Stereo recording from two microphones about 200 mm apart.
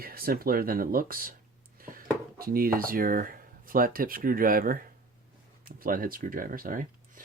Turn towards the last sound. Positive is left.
turn(degrees=-45)  # may be behind; listen again after turning